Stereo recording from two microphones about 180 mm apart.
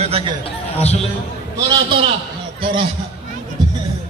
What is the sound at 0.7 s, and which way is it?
Speech, 35° left (ahead or behind).